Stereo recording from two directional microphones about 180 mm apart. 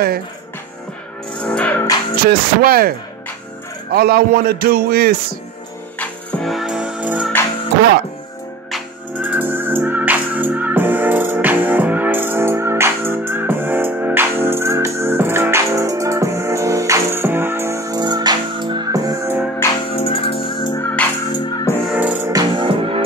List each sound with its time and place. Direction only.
1.4 s music: 5° left (ahead or behind)
2.2 s a man's voice: 55° right (ahead or behind)
3.9 s a man's voice: 60° right (ahead or behind)
5.9 s music: 5° left (ahead or behind)
8.7 s music: 10° right (ahead or behind)
19.9 s music: 30° left (ahead or behind)
20.7 s music: 10° left (ahead or behind)
21.3 s music: 20° left (ahead or behind)
21.8 s music: 10° right (ahead or behind)
22.3 s music: 25° right (ahead or behind)